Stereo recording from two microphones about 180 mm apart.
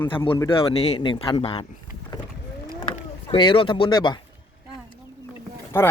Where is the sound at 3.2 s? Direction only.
30° left (ahead or behind).